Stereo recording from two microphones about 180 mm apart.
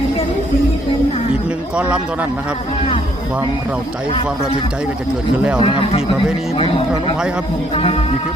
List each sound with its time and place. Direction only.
1.7 s a man's voice: 5° right (ahead or behind)
5.6 s a man's voice: 30° left (ahead or behind)